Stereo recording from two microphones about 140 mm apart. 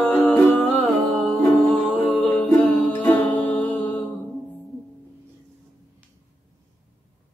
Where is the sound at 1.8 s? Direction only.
10° left (ahead or behind).